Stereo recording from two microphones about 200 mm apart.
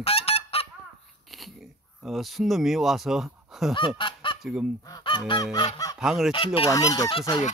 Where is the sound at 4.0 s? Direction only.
25° left (ahead or behind).